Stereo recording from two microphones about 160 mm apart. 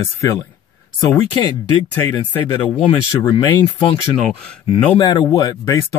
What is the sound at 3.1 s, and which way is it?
Speech, 30° left (ahead or behind).